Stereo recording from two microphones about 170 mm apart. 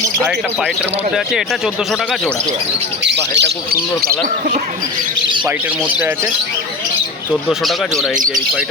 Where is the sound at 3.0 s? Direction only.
90° right.